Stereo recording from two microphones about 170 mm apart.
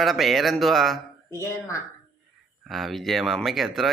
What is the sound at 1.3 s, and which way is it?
Speech, 20° left (ahead or behind).